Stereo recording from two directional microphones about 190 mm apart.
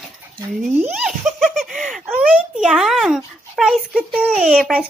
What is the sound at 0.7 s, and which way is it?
Giggle, 5° right (ahead or behind).